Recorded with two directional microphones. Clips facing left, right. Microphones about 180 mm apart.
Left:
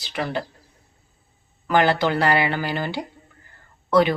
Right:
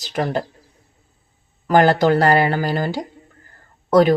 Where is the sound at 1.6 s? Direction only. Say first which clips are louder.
Right 5 dB; 45° right (ahead or behind).